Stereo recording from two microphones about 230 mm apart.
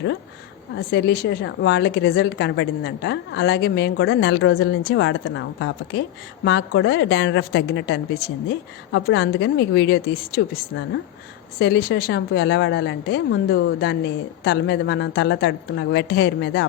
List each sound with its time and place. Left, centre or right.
0.8 s a woman's voice: left